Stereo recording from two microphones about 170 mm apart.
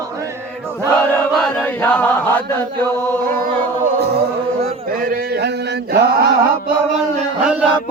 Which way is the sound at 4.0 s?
70° right (ahead or behind).